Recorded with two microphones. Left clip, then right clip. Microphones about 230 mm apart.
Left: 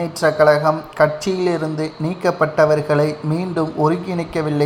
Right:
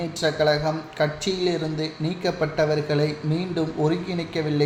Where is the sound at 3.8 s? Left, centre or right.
Centre.